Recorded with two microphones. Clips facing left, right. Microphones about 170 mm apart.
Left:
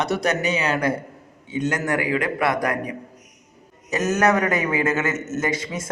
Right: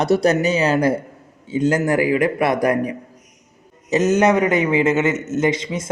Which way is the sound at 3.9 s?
20° right (ahead or behind).